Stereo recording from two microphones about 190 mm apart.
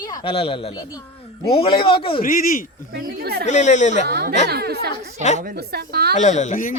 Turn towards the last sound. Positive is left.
turn(degrees=40)  # may be behind; listen again after turning